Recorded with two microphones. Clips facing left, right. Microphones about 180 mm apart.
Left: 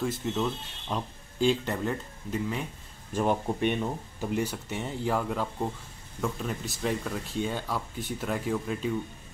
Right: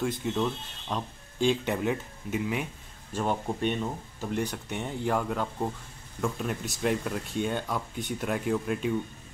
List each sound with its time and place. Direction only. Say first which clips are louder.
0.0 s speech: right 1 dB; centre (ahead or behind)
3.1 s speech: left 2 dB; 10° left (ahead or behind)